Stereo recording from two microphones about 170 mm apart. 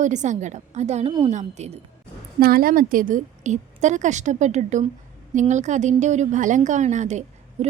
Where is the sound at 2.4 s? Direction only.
60° right (ahead or behind); by 7.7 s 45° right (ahead or behind).